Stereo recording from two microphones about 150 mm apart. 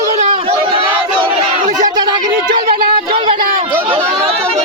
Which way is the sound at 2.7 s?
80° right.